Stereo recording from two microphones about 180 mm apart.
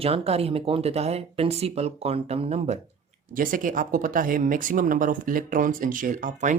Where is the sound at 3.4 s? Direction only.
50° right (ahead or behind).